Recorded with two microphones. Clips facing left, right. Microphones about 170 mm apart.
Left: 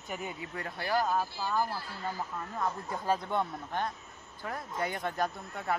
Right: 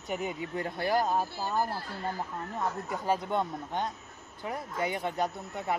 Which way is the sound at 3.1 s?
15° right (ahead or behind).